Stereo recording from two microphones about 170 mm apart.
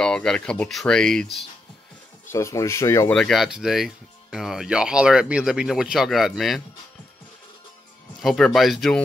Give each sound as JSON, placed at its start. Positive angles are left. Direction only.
{"t": 0.0, "sound": "speech", "side_deg": 5}
{"t": 2.3, "sound": "speech", "side_deg": 15}
{"t": 3.2, "sound": "speech", "side_deg": 0}
{"t": 8.2, "sound": "speech", "side_deg": 0}